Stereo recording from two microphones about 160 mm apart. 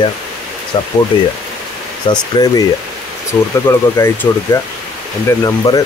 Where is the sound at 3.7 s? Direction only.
15° left (ahead or behind).